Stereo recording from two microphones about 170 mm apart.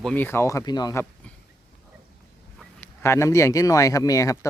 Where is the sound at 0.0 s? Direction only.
10° left (ahead or behind).